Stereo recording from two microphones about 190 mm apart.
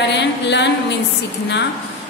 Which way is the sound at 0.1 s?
65° left (ahead or behind).